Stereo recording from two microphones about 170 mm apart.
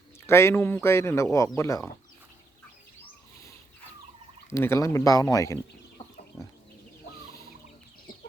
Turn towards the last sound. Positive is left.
turn(degrees=5)  # may be behind; listen again after turning